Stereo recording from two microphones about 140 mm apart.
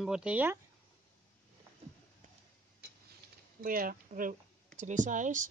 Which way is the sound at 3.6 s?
90° right.